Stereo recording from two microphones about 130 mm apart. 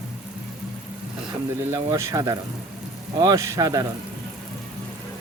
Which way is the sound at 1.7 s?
20° right (ahead or behind).